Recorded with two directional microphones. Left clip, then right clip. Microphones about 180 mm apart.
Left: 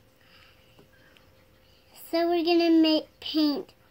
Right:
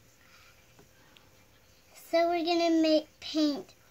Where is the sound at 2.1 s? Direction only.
15° right (ahead or behind).